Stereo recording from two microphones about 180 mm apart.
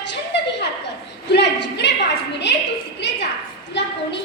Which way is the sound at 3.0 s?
75° left (ahead or behind).